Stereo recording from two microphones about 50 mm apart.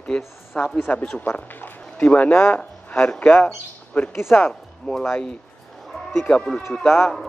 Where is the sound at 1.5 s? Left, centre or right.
Left.